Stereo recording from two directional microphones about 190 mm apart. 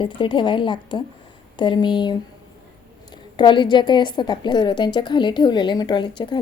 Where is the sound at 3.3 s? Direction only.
25° left (ahead or behind).